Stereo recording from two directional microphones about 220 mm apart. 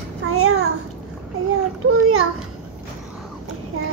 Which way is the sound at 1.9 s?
70° right (ahead or behind).